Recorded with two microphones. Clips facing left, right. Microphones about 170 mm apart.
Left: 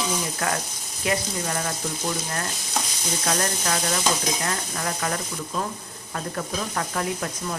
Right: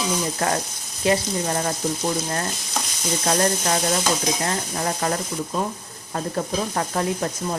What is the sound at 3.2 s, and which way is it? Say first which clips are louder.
Speech: right 5 dB; 30° right (ahead or behind).